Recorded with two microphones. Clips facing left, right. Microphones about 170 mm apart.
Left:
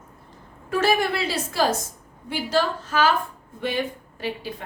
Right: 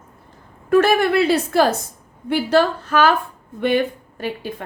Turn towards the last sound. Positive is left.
turn(degrees=-60)  # may be behind; listen again after turning